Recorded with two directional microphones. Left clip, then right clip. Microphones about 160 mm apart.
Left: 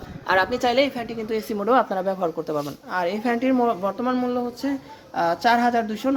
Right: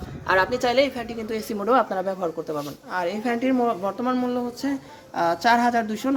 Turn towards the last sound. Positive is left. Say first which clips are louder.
# left 1 dB
turn(degrees=10)  # may be behind; listen again after turning